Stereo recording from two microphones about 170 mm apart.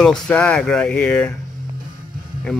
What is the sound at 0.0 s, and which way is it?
Speech, 5° left (ahead or behind).